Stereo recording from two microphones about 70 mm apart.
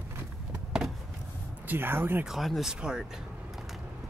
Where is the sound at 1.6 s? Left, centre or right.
Right.